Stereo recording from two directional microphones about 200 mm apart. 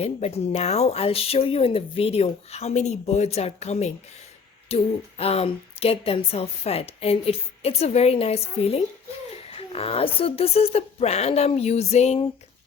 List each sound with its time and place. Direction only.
0.0 s a woman's voice: 30° left (ahead or behind)